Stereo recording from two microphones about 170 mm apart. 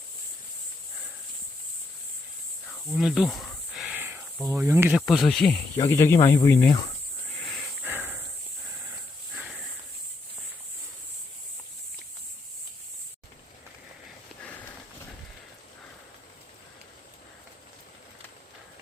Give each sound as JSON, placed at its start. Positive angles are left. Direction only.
{"t": 2.6, "sound": "snake", "side_deg": 0}
{"t": 4.6, "sound": "speech", "side_deg": -15}
{"t": 4.9, "sound": "speech", "side_deg": 0}
{"t": 5.8, "sound": "speech", "side_deg": 15}
{"t": 6.7, "sound": "speech", "side_deg": 25}
{"t": 7.4, "sound": "wheeze", "side_deg": 0}
{"t": 7.9, "sound": "a sound", "side_deg": -10}
{"t": 9.3, "sound": "a sound", "side_deg": 0}